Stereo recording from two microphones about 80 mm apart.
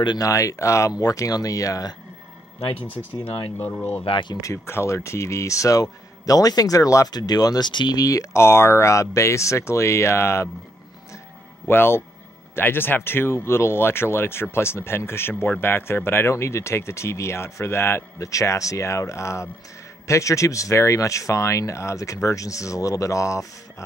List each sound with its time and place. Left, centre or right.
0.2 s speech: left
4.1 s speech: left
4.4 s speech: left
7.1 s speech: left
8.0 s speech: left
11.6 s speech: left